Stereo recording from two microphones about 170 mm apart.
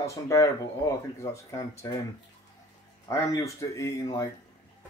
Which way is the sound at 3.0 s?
20° left (ahead or behind).